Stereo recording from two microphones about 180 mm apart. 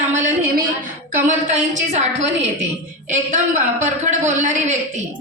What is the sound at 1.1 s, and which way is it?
A woman's voice, 40° right (ahead or behind).